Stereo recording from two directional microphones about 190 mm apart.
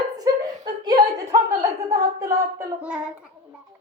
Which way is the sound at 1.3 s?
15° right (ahead or behind).